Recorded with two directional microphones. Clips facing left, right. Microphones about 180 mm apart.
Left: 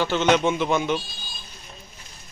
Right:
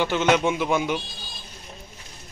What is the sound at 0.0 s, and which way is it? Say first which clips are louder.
Speech: left 1 dB; 10° right (ahead or behind).